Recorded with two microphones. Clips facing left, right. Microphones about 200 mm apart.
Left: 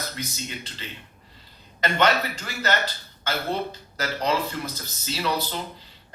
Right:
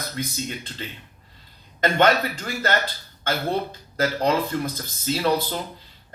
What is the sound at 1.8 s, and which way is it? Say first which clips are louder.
Speech: right 3 dB; 50° right (ahead or behind).